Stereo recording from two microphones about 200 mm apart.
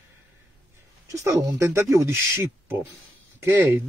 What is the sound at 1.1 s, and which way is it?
Speech, 15° right (ahead or behind).